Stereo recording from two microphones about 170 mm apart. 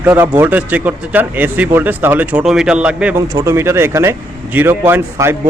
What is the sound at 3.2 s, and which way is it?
A man's voice, 15° right (ahead or behind).